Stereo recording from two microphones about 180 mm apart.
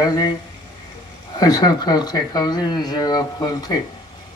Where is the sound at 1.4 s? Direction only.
20° left (ahead or behind).